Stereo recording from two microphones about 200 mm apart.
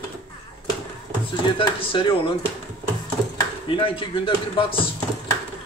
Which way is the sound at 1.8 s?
25° left (ahead or behind).